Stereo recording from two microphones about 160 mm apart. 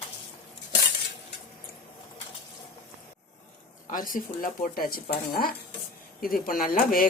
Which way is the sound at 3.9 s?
60° left (ahead or behind).